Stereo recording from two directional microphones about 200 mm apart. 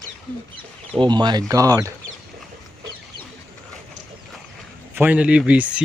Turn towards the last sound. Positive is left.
turn(degrees=-5)  # may be behind; listen again after turning